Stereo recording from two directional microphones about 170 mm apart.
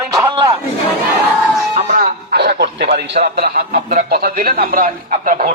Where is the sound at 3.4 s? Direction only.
70° right (ahead or behind); by 5.5 s 55° right (ahead or behind).